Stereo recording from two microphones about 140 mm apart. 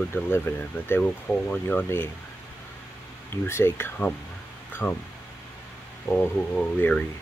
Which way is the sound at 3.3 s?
15° left (ahead or behind).